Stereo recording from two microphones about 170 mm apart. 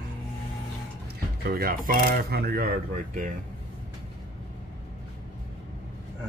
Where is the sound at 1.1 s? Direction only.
60° right (ahead or behind).